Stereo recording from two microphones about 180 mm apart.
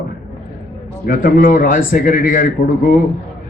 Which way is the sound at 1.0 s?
50° left (ahead or behind).